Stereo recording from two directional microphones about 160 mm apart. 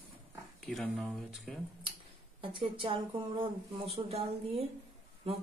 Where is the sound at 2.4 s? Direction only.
35° right (ahead or behind).